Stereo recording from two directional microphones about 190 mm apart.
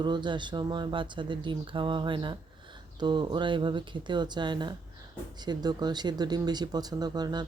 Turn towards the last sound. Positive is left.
turn(degrees=-20)  # may be behind; listen again after turning